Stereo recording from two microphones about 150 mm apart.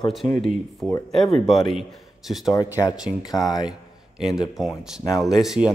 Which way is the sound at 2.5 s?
20° left (ahead or behind).